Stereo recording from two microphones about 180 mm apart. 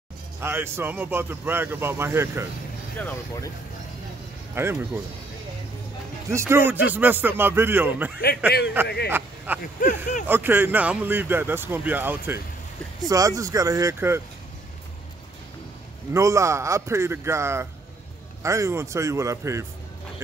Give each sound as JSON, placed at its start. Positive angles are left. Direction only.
{"t": 0.4, "sound": "speech", "side_deg": -10}
{"t": 3.0, "sound": "speech", "side_deg": 15}
{"t": 4.6, "sound": "speech", "side_deg": -15}
{"t": 6.3, "sound": "speech", "side_deg": -15}
{"t": 8.8, "sound": "speech", "side_deg": 65}
{"t": 9.8, "sound": "speech", "side_deg": 45}
{"t": 10.2, "sound": "speech", "side_deg": -10}
{"t": 16.1, "sound": "speech", "side_deg": -15}